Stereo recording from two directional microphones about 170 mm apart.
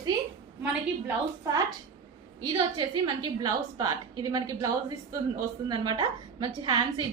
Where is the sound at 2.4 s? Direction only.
25° right (ahead or behind).